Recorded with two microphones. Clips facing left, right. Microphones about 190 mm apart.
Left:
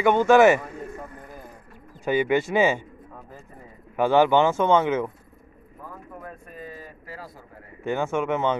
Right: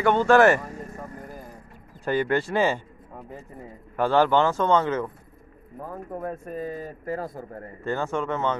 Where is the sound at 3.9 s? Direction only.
15° left (ahead or behind).